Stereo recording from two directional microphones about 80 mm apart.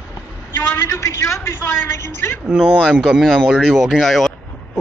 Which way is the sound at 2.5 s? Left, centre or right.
Centre.